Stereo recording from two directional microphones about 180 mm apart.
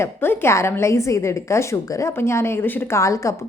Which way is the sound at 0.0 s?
15° left (ahead or behind).